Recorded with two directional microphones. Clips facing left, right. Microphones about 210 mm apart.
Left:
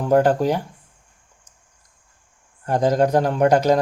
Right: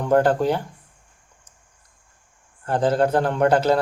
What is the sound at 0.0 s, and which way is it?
Speech, 10° left (ahead or behind).